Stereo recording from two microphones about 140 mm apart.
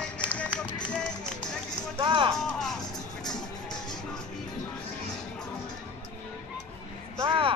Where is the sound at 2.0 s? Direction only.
35° right (ahead or behind).